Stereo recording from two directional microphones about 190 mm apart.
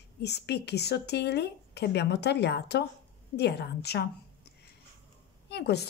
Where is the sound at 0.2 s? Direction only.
60° left (ahead or behind).